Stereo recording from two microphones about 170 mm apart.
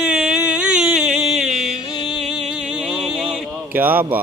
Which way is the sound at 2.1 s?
5° right (ahead or behind).